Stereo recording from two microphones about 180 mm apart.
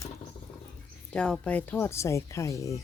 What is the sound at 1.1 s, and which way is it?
Speech, 5° left (ahead or behind).